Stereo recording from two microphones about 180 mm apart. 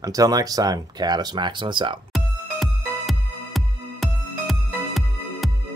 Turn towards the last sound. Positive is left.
turn(degrees=0)  # may be behind; listen again after turning